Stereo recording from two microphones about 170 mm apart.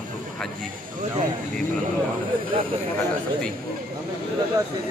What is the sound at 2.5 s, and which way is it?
Speech, 30° right (ahead or behind).